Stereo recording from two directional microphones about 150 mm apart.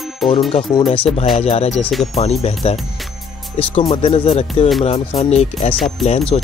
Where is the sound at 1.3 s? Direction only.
40° left (ahead or behind).